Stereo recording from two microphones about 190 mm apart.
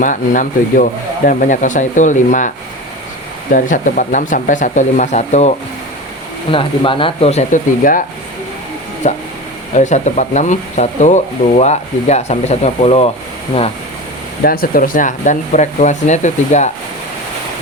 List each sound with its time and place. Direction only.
0.0 s speech: 45° left (ahead or behind)
3.5 s speech: 45° left (ahead or behind)
9.0 s speech: 35° left (ahead or behind)
14.4 s speech: 50° left (ahead or behind)